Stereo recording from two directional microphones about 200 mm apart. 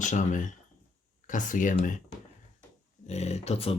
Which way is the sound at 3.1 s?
35° left (ahead or behind).